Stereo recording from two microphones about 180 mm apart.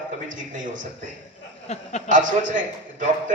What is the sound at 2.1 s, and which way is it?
Speech, 45° right (ahead or behind).